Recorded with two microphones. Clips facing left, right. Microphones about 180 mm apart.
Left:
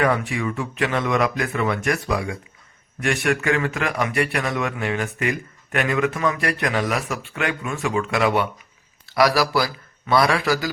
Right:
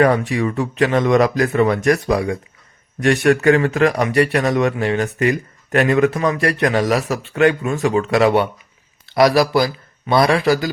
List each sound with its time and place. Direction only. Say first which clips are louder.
0.0 s speech: right 6 dB; 35° right (ahead or behind)
9.1 s a man's voice: right 5 dB; 25° right (ahead or behind)